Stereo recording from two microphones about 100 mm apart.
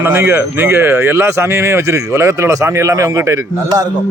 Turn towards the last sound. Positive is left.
turn(degrees=-40)  # may be behind; listen again after turning